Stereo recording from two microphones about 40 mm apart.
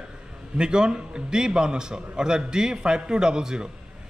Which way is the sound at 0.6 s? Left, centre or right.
Right.